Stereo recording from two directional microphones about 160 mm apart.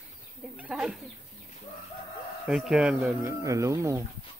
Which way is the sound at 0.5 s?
5° right (ahead or behind).